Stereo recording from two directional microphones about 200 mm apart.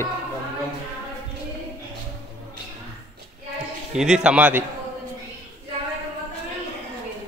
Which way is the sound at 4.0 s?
5° right (ahead or behind).